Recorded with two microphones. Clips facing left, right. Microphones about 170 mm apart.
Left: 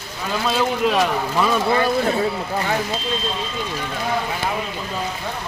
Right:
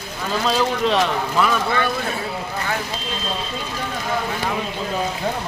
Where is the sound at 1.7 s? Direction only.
30° left (ahead or behind).